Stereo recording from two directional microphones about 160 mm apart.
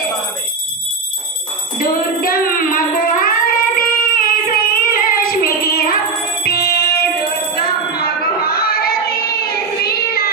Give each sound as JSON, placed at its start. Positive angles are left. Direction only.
{"t": 1.8, "sound": "a sound", "side_deg": 65}
{"t": 6.4, "sound": "music", "side_deg": 80}
{"t": 9.8, "sound": "child singing", "side_deg": 75}